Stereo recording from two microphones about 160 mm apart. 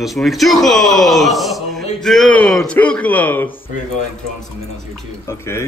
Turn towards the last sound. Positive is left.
turn(degrees=15)  # may be behind; listen again after turning